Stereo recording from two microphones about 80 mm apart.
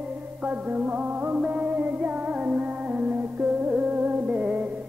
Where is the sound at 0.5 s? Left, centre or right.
Centre.